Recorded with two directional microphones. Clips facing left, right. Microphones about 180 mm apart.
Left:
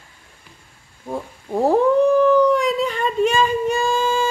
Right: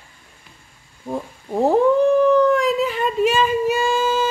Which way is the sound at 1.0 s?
Centre (ahead or behind).